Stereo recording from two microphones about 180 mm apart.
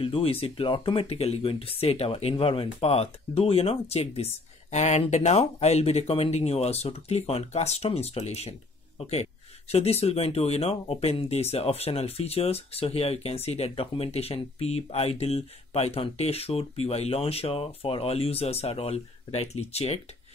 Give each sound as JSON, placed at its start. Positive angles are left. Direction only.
{"t": 0.0, "sound": "speech", "side_deg": 30}